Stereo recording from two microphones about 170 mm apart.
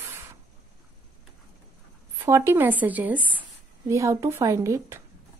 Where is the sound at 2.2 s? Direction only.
15° right (ahead or behind).